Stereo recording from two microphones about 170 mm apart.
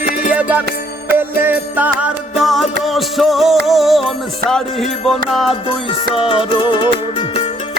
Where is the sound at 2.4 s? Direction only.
Centre (ahead or behind).